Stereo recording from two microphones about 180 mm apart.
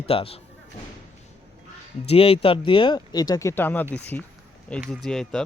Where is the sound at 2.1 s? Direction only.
30° left (ahead or behind).